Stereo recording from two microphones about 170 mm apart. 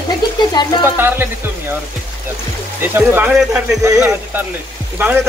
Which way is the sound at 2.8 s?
10° right (ahead or behind).